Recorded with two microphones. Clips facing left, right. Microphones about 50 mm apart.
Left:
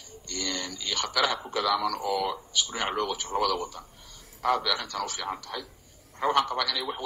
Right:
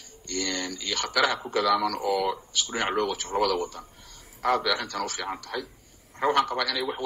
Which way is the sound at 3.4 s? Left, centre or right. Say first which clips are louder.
Right 3 dB; right.